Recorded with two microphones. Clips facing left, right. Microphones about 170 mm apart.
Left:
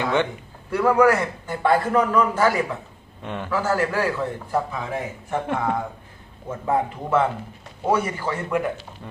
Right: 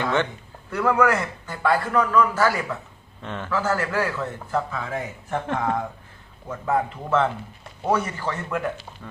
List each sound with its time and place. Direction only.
0.0 s a man's voice: 15° left (ahead or behind)
6.5 s a man's voice: 25° left (ahead or behind)
7.1 s a man's voice: 10° left (ahead or behind)